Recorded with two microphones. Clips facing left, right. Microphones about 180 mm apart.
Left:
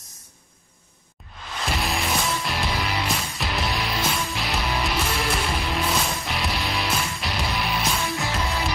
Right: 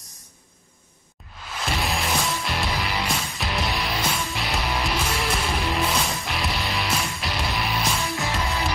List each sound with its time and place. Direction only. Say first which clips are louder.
1.6 s music: even; centre (ahead or behind)